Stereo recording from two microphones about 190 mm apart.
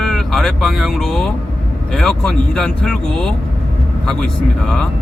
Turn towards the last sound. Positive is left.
turn(degrees=5)  # may be behind; listen again after turning